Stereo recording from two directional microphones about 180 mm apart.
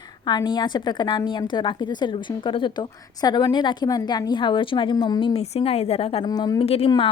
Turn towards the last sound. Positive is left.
turn(degrees=30)  # may be behind; listen again after turning